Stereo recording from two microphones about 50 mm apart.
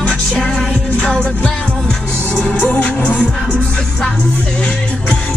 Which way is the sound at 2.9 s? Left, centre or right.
Left.